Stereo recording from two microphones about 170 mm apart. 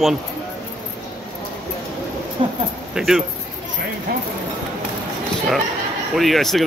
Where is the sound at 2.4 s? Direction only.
35° right (ahead or behind).